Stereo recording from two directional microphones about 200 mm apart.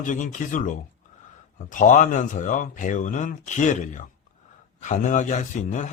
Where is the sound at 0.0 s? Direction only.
40° left (ahead or behind).